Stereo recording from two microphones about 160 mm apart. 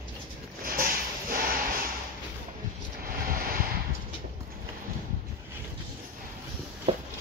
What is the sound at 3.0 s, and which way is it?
Vehicle, 65° right (ahead or behind).